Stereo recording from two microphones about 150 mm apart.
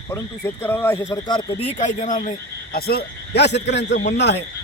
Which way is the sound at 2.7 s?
90° left.